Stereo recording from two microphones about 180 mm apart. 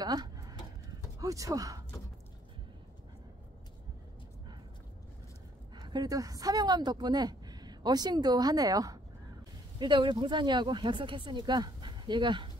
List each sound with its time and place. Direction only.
0.0 s a sound: 20° right (ahead or behind)
1.2 s speech: 20° right (ahead or behind)
5.8 s speech: 20° right (ahead or behind)